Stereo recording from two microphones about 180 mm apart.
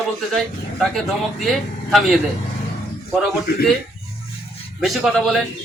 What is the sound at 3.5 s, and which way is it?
Speech, 60° left (ahead or behind).